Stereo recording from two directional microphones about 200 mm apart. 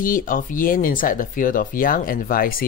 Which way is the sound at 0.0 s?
45° left (ahead or behind).